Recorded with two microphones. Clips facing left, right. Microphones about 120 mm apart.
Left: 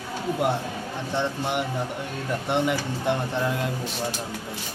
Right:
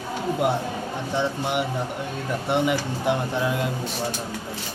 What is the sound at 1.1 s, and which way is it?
Speech, 10° right (ahead or behind).